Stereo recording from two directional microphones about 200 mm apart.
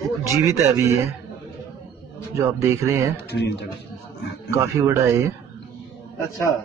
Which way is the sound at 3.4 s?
60° left (ahead or behind).